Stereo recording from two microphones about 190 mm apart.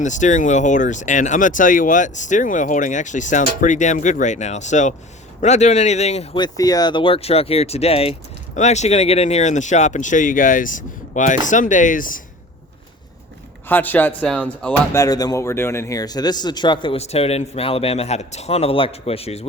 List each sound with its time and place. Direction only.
0.0 s speech: 40° left (ahead or behind)
6.4 s speech: 20° left (ahead or behind); by 12.2 s 45° left (ahead or behind)
13.7 s speech: 10° left (ahead or behind)
15.0 s speech: 20° left (ahead or behind)